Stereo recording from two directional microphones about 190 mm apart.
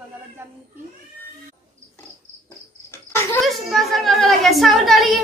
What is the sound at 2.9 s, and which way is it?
Cricket, 15° left (ahead or behind).